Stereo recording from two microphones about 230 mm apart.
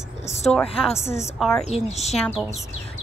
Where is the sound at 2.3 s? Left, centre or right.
Centre.